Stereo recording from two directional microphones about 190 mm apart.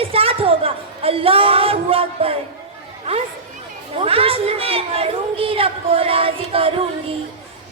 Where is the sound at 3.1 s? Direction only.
30° right (ahead or behind).